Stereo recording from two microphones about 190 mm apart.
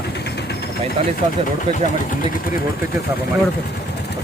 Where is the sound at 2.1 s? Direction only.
45° left (ahead or behind).